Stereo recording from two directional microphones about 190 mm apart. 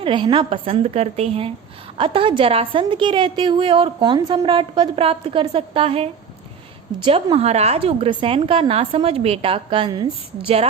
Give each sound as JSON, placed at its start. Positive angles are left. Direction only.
{"t": 0.0, "sound": "a woman's voice", "side_deg": -25}